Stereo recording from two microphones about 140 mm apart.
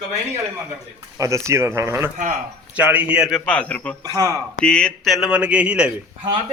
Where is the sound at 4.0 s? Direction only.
25° right (ahead or behind).